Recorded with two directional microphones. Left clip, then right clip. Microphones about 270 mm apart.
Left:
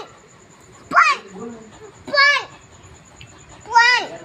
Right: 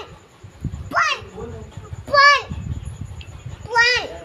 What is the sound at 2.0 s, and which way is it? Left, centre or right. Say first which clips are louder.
Children playing: right 2 dB; centre.